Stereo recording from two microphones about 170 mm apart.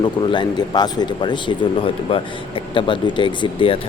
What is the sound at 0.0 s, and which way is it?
A man's voice, 25° left (ahead or behind).